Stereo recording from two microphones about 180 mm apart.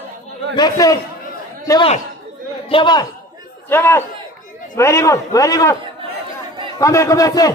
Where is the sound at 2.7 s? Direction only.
25° left (ahead or behind).